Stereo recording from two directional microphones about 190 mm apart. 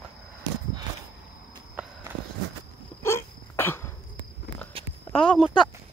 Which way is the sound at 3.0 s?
15° left (ahead or behind).